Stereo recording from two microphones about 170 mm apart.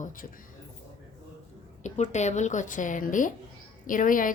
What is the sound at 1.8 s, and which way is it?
A woman's voice, 45° left (ahead or behind).